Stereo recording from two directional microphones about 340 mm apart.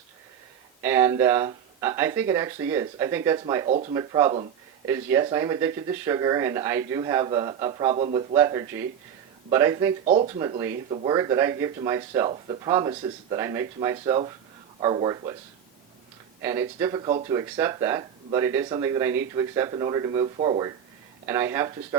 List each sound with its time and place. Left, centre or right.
0.8 s speech: centre
16.4 s speech: centre